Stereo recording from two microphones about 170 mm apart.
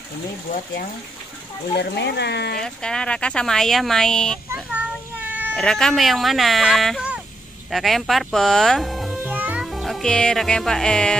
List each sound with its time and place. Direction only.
1.8 s speech: 85° left
2.6 s speech: 5° left (ahead or behind)
4.6 s a sound: 10° right (ahead or behind)
5.6 s speech: 5° left (ahead or behind)
9.2 s music: 10° right (ahead or behind)